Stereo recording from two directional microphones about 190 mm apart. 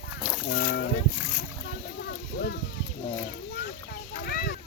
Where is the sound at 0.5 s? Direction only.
65° left (ahead or behind).